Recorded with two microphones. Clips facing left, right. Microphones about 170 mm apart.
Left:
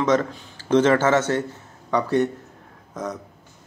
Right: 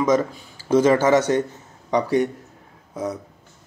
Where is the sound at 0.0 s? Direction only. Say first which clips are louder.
Right 1 dB; 10° right (ahead or behind).